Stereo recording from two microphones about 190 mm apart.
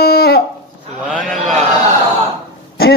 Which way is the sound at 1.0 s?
Centre (ahead or behind).